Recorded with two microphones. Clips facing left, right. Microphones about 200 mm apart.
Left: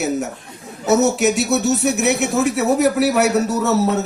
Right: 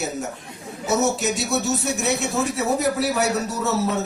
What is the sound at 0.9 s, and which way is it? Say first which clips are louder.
Speech: left 6 dB; 70° left (ahead or behind).